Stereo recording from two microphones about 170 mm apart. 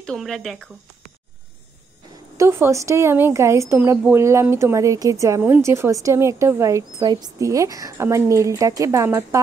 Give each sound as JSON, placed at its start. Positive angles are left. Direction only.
{"t": 0.0, "sound": "speech", "side_deg": 0}
{"t": 2.3, "sound": "speech", "side_deg": -15}